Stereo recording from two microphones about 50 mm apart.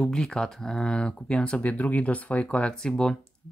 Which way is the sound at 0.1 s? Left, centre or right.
Centre.